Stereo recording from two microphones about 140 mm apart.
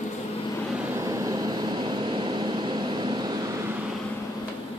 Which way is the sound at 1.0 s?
25° right (ahead or behind).